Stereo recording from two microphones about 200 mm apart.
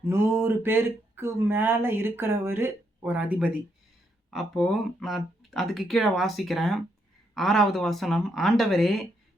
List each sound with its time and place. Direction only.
0.0 s speech: 10° right (ahead or behind)